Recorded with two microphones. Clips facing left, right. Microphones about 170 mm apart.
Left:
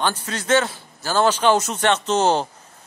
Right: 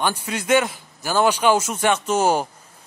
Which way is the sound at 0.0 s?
15° right (ahead or behind).